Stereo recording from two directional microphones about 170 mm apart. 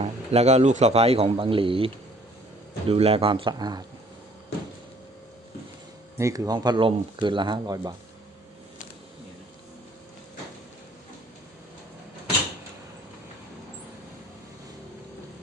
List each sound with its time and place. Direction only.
0.0 s a man's voice: 40° right (ahead or behind); by 3.8 s 25° right (ahead or behind)
6.1 s speech: 20° right (ahead or behind)